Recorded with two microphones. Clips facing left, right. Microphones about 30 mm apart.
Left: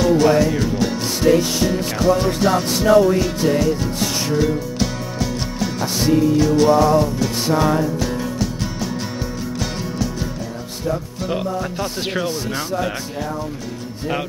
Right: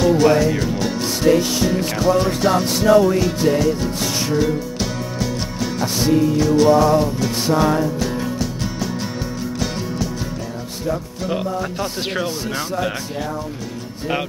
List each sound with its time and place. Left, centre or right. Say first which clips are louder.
0.0 s music: even; centre
11.2 s speech: right 1 dB; centre